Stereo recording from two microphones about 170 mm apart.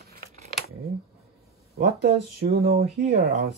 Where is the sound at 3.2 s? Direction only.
65° right (ahead or behind).